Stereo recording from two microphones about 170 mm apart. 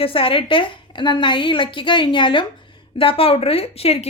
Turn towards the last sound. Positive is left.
turn(degrees=35)  # may be behind; listen again after turning